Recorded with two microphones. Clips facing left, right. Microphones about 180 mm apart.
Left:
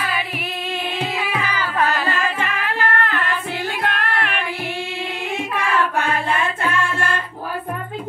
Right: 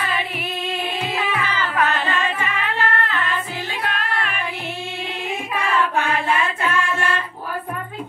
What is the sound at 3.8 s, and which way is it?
Music, 65° left (ahead or behind).